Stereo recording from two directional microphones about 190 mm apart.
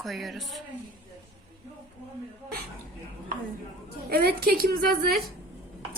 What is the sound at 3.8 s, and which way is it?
A woman's voice, 55° right (ahead or behind).